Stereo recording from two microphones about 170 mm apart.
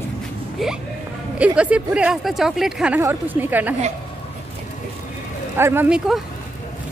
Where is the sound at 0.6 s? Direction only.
Centre (ahead or behind).